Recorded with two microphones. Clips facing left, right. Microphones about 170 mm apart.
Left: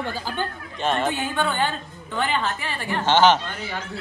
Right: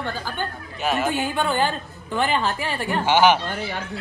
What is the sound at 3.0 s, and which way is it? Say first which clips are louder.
Speech: even; 10° right (ahead or behind).